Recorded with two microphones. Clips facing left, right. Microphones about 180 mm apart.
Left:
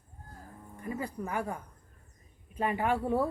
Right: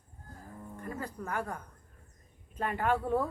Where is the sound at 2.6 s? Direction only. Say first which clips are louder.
Left 1 dB; 10° left (ahead or behind).